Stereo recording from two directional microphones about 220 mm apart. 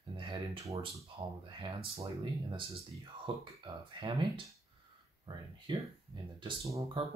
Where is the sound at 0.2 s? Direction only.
20° right (ahead or behind).